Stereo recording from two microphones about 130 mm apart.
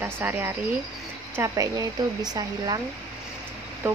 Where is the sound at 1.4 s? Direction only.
25° right (ahead or behind).